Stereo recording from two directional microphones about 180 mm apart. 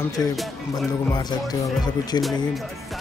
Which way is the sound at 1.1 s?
20° left (ahead or behind).